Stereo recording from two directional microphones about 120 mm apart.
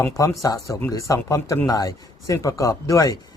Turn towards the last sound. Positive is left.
turn(degrees=25)  # may be behind; listen again after turning